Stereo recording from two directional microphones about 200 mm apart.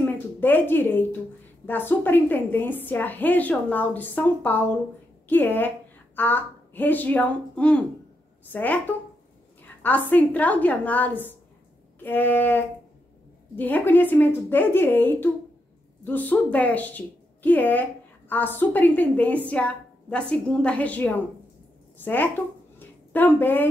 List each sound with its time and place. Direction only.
0.0 s a woman's voice: 10° left (ahead or behind)
9.8 s a woman's voice: 10° left (ahead or behind)
22.8 s a sound: 10° left (ahead or behind)